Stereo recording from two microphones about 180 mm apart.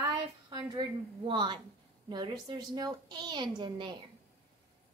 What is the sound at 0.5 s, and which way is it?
A woman's voice, 25° right (ahead or behind).